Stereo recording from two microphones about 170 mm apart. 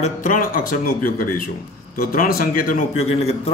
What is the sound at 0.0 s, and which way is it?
Speech, 50° left (ahead or behind).